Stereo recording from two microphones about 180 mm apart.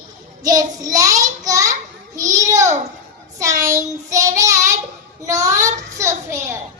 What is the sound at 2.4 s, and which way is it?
Child singing, 15° right (ahead or behind).